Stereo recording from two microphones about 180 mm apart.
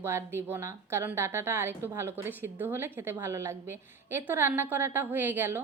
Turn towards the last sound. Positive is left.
turn(degrees=-10)  # may be behind; listen again after turning